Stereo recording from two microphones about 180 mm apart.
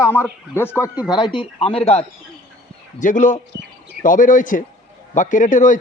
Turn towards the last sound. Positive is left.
turn(degrees=45)  # may be behind; listen again after turning